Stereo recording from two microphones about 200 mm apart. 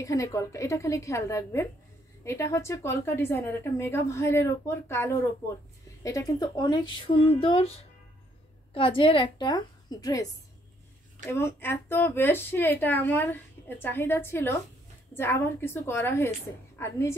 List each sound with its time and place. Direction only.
0.0 s a woman's voice: 15° left (ahead or behind)